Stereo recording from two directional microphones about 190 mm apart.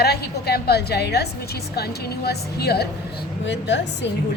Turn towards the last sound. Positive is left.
turn(degrees=65)  # may be behind; listen again after turning